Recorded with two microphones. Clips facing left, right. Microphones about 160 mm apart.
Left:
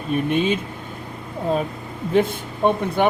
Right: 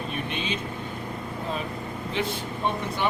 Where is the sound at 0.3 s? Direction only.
50° left (ahead or behind).